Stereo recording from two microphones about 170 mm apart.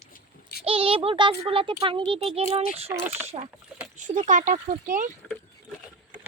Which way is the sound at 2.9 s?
15° right (ahead or behind).